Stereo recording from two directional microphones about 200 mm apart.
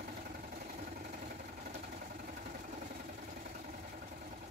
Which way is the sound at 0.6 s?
45° right (ahead or behind).